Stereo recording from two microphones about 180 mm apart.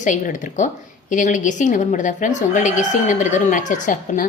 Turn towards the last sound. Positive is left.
turn(degrees=45)  # may be behind; listen again after turning